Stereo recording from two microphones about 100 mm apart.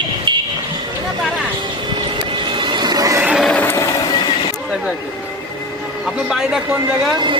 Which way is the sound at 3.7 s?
30° left (ahead or behind).